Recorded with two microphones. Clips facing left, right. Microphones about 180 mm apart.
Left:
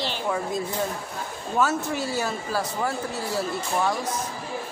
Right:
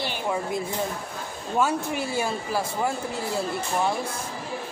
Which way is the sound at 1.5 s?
20° right (ahead or behind).